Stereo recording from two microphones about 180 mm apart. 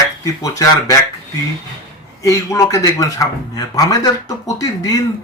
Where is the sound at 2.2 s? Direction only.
15° left (ahead or behind).